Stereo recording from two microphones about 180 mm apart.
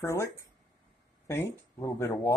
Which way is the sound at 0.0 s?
15° left (ahead or behind).